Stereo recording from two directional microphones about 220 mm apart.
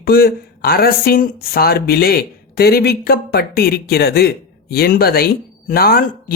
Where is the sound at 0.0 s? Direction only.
45° left (ahead or behind).